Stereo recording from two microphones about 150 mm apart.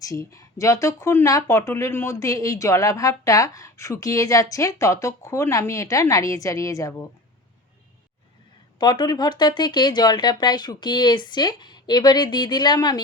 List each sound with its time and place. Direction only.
0.0 s speech: 20° left (ahead or behind)
8.8 s speech: 30° left (ahead or behind)